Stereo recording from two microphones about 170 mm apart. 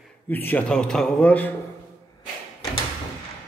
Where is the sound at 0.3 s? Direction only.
10° left (ahead or behind).